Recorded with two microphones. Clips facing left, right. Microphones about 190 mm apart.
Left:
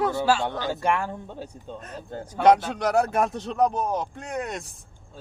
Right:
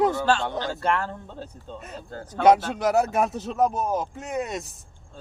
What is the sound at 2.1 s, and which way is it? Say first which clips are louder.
Speech: left 5 dB; 20° left (ahead or behind).